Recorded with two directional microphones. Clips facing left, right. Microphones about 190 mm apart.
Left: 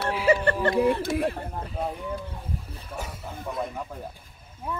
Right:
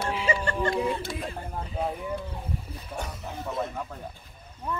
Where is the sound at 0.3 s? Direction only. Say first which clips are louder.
Left 6 dB; 60° left (ahead or behind).